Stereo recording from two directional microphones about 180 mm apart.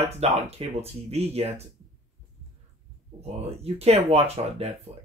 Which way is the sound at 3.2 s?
35° right (ahead or behind).